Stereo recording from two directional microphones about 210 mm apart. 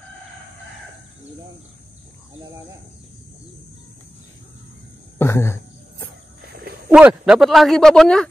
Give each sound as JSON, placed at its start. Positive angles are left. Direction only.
{"t": 5.2, "sound": "cricket", "side_deg": 15}
{"t": 6.4, "sound": "a sound", "side_deg": -50}
{"t": 6.9, "sound": "speech", "side_deg": -5}